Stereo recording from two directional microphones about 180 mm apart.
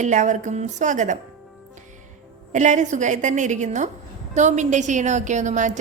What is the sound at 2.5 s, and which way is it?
Speech, 45° right (ahead or behind).